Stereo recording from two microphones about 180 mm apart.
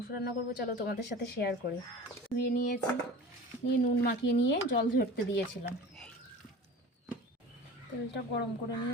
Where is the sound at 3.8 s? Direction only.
55° left (ahead or behind).